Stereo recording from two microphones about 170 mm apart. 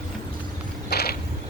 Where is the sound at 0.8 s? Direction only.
70° left (ahead or behind).